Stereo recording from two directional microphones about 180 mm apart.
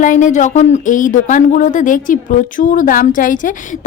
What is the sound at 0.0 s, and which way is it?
Speech, 45° left (ahead or behind).